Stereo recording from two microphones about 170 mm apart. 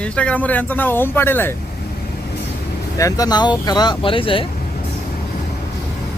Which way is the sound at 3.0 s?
20° left (ahead or behind).